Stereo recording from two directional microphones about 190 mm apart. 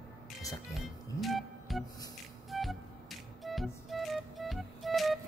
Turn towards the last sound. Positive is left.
turn(degrees=0)  # may be behind; listen again after turning